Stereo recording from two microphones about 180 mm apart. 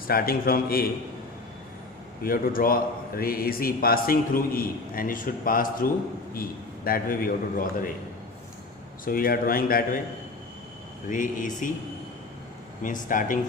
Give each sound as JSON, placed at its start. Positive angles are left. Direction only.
{"t": 0.1, "sound": "a man's voice", "side_deg": 55}
{"t": 2.2, "sound": "a man's voice", "side_deg": 50}
{"t": 9.0, "sound": "a man's voice", "side_deg": 55}
{"t": 11.1, "sound": "a man's voice", "side_deg": 45}
{"t": 12.8, "sound": "a man's voice", "side_deg": 45}